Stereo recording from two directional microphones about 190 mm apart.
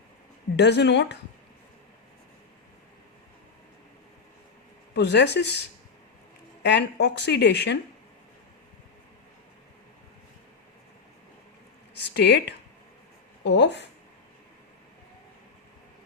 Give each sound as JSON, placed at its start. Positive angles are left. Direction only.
{"t": 0.5, "sound": "speech", "side_deg": 65}
{"t": 4.9, "sound": "speech", "side_deg": 65}
{"t": 11.9, "sound": "speech", "side_deg": 60}